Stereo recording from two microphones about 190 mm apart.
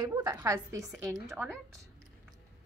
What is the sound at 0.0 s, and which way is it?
A woman's voice, 20° right (ahead or behind).